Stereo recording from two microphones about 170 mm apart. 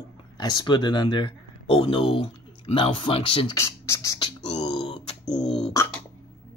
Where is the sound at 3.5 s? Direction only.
15° left (ahead or behind).